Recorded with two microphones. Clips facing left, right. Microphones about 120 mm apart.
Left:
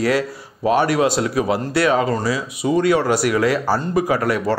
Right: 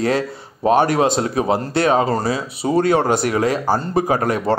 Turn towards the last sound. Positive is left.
turn(degrees=-30)  # may be behind; listen again after turning